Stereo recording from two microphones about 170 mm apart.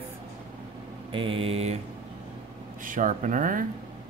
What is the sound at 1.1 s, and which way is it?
Speech, 30° right (ahead or behind).